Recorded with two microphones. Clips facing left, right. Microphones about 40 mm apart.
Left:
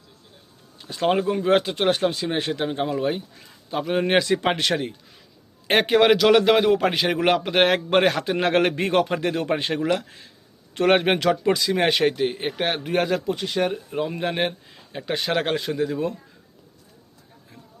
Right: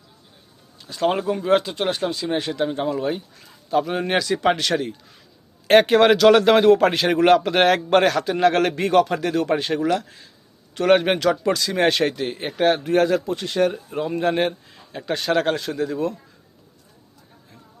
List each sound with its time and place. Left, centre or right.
0.8 s speech: left
1.5 s a man's voice: left
5.6 s a man's voice: centre
8.2 s a man's voice: left
11.5 s a man's voice: centre